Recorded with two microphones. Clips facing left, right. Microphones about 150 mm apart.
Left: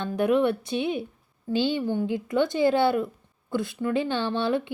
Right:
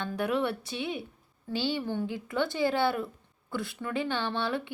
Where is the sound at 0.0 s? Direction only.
20° left (ahead or behind).